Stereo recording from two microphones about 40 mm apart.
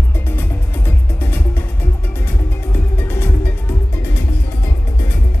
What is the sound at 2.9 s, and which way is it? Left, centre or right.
Music, left.